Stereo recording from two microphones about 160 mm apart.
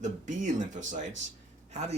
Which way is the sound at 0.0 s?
50° right (ahead or behind).